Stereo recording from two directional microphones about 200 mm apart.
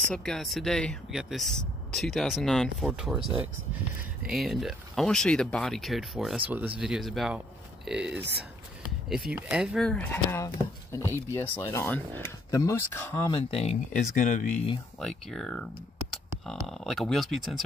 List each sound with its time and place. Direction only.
0.1 s speech: 5° left (ahead or behind)
13.3 s speech: 30° left (ahead or behind)
15.0 s speech: 5° left (ahead or behind)
16.6 s speech: centre (ahead or behind)